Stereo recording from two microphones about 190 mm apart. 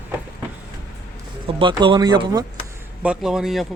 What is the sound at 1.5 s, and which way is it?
Speech, 25° right (ahead or behind).